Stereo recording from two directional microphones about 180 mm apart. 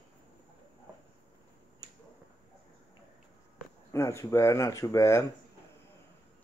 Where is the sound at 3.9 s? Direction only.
15° left (ahead or behind).